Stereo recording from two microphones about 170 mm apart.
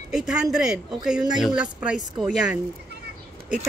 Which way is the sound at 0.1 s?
5° right (ahead or behind).